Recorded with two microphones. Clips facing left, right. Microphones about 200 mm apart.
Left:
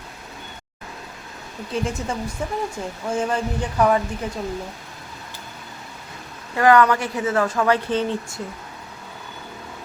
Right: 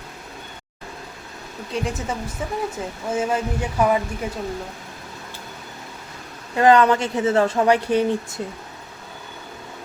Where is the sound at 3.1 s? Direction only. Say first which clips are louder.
Right 1 dB; 5° right (ahead or behind).